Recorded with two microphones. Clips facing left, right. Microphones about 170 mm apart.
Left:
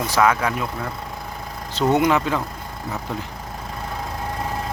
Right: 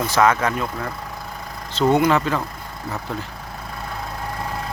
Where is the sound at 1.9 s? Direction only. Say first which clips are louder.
Left 2 dB; 15° left (ahead or behind).